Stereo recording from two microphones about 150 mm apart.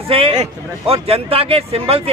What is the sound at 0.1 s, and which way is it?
Speech, 40° right (ahead or behind).